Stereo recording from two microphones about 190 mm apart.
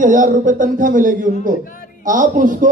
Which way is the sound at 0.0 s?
45° right (ahead or behind).